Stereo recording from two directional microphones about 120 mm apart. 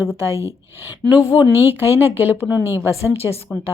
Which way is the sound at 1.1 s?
30° left (ahead or behind).